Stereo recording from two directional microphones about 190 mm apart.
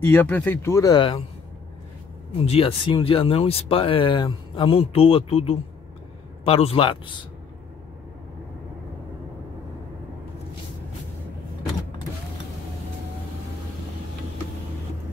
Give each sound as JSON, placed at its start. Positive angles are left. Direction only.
{"t": 0.0, "sound": "speech", "side_deg": 10}
{"t": 2.4, "sound": "speech", "side_deg": 30}